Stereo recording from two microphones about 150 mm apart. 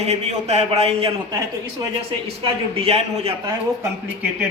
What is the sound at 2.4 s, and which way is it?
Speech, 40° right (ahead or behind).